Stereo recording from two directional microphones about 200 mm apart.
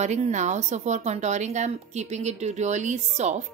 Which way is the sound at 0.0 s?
35° right (ahead or behind).